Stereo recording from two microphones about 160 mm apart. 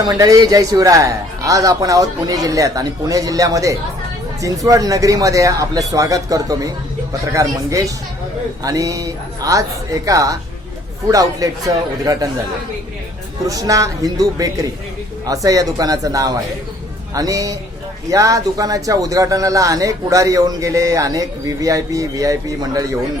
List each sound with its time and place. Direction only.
0.0 s speech: 25° right (ahead or behind)
13.4 s speech: 20° right (ahead or behind)